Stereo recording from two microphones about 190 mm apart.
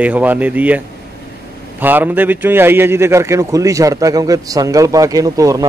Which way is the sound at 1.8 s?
10° right (ahead or behind).